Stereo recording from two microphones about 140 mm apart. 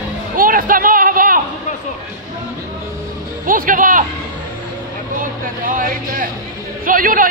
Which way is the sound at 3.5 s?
80° right.